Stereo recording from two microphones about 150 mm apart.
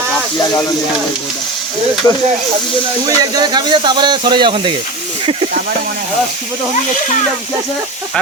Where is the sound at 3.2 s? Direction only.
25° right (ahead or behind).